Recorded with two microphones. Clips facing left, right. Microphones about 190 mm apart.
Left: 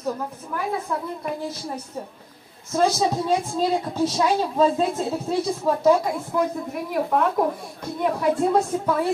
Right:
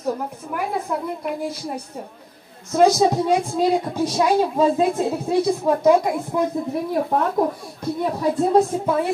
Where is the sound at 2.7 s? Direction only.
15° right (ahead or behind).